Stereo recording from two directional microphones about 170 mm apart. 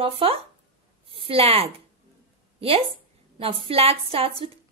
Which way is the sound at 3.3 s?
35° right (ahead or behind).